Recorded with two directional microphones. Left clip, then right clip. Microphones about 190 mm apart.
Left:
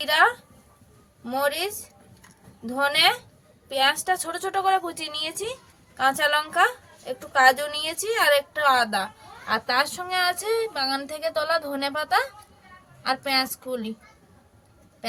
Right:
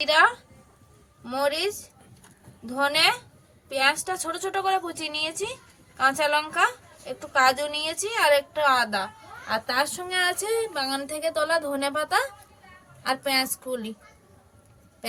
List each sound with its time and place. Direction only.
0.0 s a woman's voice: 15° left (ahead or behind); by 13.9 s 5° right (ahead or behind)